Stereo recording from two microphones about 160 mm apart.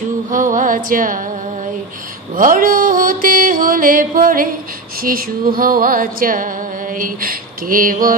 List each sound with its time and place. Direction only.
0.3 s music: 55° right (ahead or behind)
2.3 s mantra: 60° right (ahead or behind)
5.0 s music: 60° right (ahead or behind)